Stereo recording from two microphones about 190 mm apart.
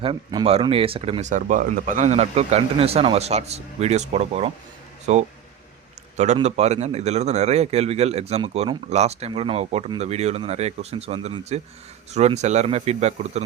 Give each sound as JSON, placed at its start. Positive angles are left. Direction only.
{"t": 0.0, "sound": "a man's voice", "side_deg": -25}